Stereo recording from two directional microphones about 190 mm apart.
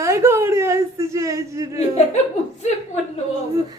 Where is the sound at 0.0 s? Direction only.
15° right (ahead or behind).